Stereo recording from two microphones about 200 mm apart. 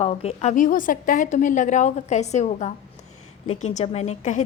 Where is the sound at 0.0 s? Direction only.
30° left (ahead or behind).